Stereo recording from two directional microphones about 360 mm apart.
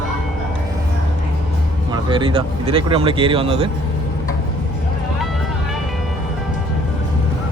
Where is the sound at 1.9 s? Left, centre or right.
Centre.